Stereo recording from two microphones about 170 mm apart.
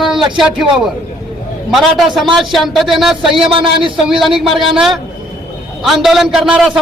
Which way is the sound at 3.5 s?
30° right (ahead or behind).